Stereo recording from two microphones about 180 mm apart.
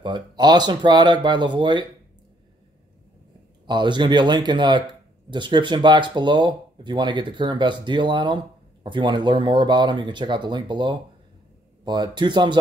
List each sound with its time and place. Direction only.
0.0 s speech: 25° right (ahead or behind)
3.6 s speech: 25° right (ahead or behind)